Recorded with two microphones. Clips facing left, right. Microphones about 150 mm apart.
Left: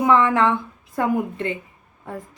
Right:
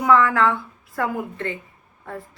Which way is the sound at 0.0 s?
20° left (ahead or behind).